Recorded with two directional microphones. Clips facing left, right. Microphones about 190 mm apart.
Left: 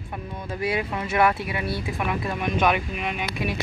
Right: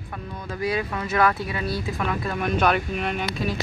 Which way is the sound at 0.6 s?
25° left (ahead or behind).